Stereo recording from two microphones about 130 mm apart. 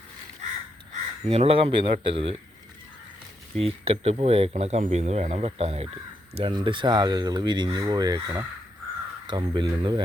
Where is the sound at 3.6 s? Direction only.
50° right (ahead or behind); by 8.2 s 30° right (ahead or behind).